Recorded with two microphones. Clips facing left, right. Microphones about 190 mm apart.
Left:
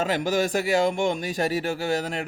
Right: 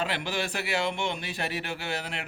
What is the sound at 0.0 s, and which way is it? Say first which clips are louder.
Speech: left 7 dB; 45° left (ahead or behind).